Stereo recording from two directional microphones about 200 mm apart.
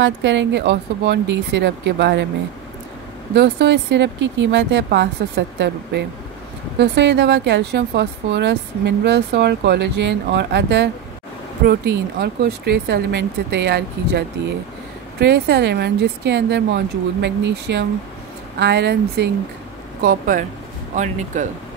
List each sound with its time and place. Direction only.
0.0 s speech: 65° right (ahead or behind)
3.3 s speech: 60° right (ahead or behind)
20.0 s speech: 45° right (ahead or behind)